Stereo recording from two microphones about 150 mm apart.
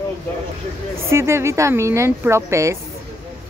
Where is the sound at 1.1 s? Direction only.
15° right (ahead or behind).